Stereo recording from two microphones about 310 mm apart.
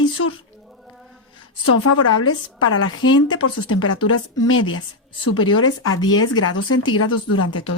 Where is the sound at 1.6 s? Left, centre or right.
Left.